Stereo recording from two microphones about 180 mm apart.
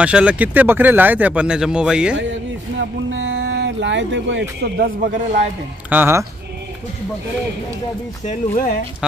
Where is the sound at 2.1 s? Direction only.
90° right.